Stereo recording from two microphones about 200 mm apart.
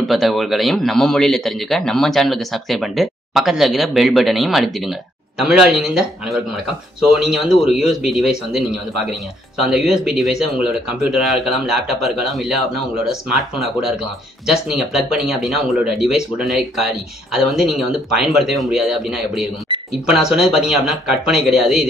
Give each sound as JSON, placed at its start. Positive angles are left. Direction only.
{"t": 0.0, "sound": "a man's voice", "side_deg": 0}
{"t": 19.7, "sound": "a sound", "side_deg": -25}
{"t": 20.1, "sound": "a man's voice", "side_deg": -5}